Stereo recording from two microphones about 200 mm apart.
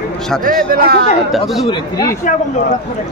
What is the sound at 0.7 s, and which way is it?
Speech, 50° right (ahead or behind).